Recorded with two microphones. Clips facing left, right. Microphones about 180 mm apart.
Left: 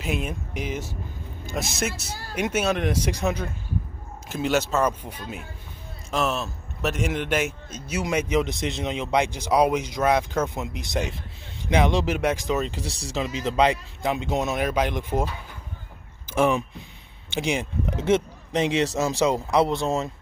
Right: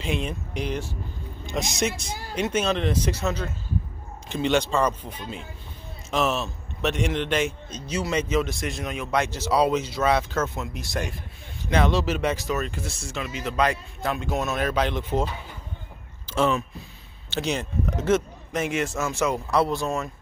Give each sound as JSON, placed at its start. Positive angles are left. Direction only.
{"t": 0.0, "sound": "a man's voice", "side_deg": 5}
{"t": 1.8, "sound": "speech", "side_deg": 5}
{"t": 2.0, "sound": "a sound", "side_deg": -15}
{"t": 2.3, "sound": "a man's voice", "side_deg": 10}
{"t": 13.0, "sound": "speech", "side_deg": 30}
{"t": 16.3, "sound": "a man's voice", "side_deg": 15}
{"t": 18.9, "sound": "speech", "side_deg": 35}
{"t": 19.2, "sound": "speech", "side_deg": 20}